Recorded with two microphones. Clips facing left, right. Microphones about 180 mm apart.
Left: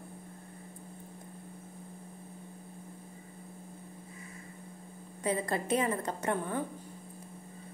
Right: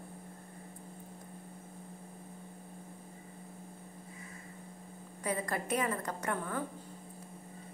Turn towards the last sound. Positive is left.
turn(degrees=25)  # may be behind; listen again after turning